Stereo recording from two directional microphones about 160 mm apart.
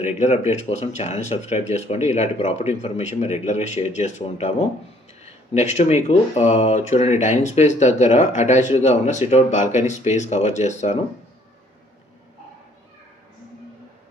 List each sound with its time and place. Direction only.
0.0 s speech: 45° left (ahead or behind)
5.5 s speech: 45° left (ahead or behind)